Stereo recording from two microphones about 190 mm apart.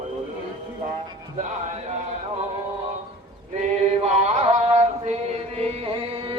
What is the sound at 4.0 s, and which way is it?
Chant, 35° right (ahead or behind).